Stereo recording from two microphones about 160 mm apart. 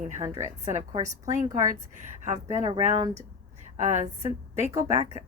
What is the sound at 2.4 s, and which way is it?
Speech, 25° right (ahead or behind).